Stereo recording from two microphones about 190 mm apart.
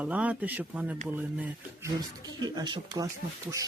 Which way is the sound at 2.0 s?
20° right (ahead or behind).